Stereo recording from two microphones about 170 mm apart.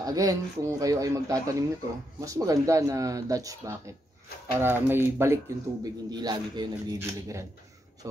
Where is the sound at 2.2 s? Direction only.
20° right (ahead or behind).